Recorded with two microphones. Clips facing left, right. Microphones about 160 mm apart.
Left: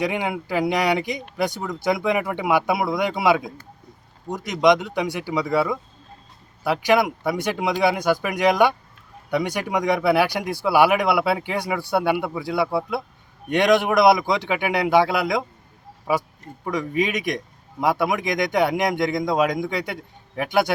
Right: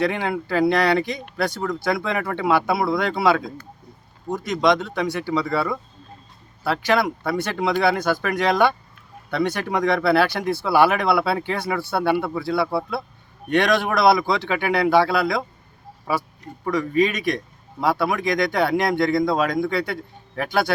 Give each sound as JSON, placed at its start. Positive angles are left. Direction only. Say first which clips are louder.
{"t": 0.0, "sound": "a man's voice", "louder": "right 2 dB", "side_deg": 15}